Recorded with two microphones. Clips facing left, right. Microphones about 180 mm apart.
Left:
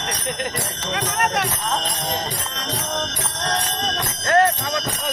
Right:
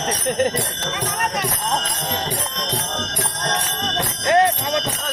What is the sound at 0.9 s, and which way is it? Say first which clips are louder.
Speech: left 3 dB; 65° left (ahead or behind).